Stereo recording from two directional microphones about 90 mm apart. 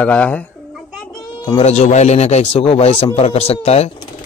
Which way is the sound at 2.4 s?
90° left.